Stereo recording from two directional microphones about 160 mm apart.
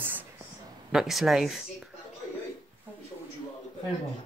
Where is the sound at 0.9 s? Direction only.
Centre (ahead or behind).